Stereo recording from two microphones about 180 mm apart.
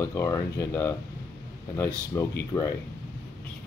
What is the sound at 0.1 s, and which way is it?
Speech, 15° left (ahead or behind).